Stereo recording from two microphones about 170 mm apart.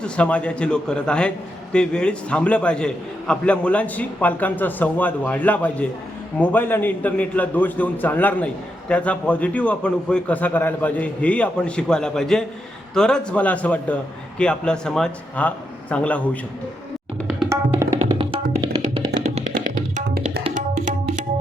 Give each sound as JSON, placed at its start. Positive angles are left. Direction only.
{"t": 0.0, "sound": "a man's voice", "side_deg": 5}
{"t": 17.5, "sound": "tabla", "side_deg": -15}
{"t": 18.0, "sound": "music", "side_deg": -35}
{"t": 19.2, "sound": "music", "side_deg": -40}
{"t": 20.5, "sound": "tabla", "side_deg": -50}